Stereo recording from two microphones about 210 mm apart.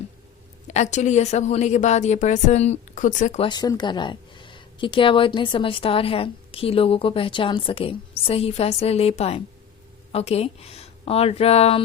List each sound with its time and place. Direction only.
0.7 s a woman's voice: 35° left (ahead or behind)